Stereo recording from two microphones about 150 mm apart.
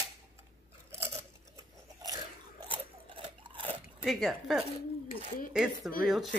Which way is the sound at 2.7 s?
35° right (ahead or behind).